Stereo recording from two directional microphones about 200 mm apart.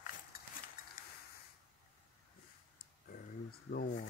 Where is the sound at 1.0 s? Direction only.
45° left (ahead or behind).